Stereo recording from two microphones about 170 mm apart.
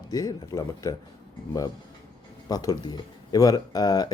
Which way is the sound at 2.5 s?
20° left (ahead or behind).